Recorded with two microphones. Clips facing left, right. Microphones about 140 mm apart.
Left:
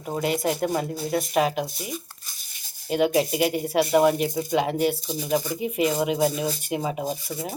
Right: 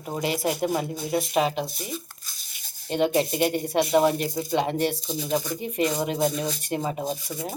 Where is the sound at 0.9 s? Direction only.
Centre (ahead or behind).